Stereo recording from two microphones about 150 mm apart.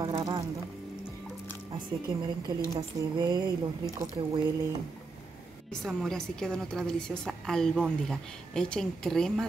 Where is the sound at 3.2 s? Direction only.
30° right (ahead or behind).